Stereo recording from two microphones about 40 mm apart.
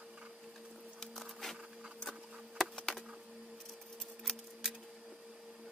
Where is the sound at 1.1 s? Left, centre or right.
Centre.